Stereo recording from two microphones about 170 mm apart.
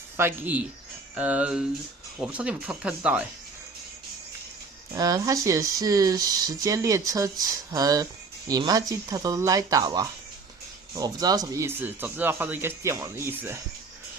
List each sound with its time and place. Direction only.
0.2 s speech: 10° right (ahead or behind)
4.9 s speech: 20° right (ahead or behind)